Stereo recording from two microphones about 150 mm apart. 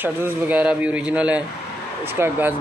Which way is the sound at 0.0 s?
10° right (ahead or behind).